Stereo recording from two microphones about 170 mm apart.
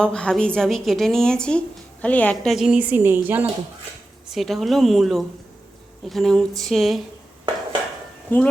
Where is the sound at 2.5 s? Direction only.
5° right (ahead or behind).